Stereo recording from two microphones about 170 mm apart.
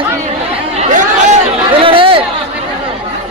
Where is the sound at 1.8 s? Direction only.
30° right (ahead or behind).